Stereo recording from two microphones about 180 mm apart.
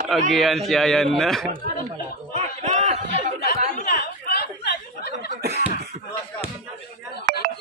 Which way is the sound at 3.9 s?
65° left (ahead or behind).